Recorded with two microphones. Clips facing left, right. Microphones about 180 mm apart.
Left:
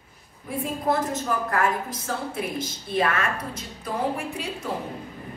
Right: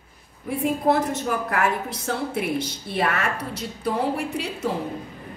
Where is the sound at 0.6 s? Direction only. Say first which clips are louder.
Right 4 dB; 70° right (ahead or behind).